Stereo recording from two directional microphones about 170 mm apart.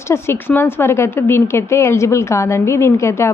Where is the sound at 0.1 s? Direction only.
15° left (ahead or behind).